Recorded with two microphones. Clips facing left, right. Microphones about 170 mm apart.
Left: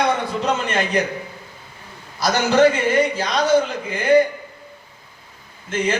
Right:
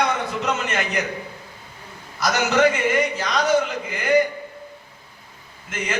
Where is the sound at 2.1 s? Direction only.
30° left (ahead or behind).